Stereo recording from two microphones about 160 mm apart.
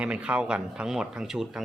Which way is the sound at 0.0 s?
5° right (ahead or behind).